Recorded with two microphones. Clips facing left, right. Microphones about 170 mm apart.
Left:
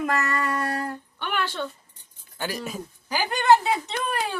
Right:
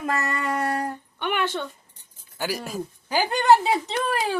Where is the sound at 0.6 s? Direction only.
25° right (ahead or behind).